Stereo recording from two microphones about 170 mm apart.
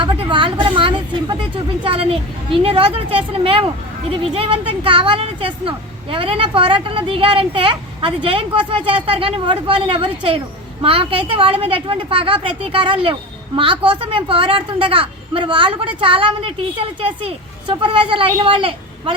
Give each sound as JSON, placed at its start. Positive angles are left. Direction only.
{"t": 0.0, "sound": "speech", "side_deg": -30}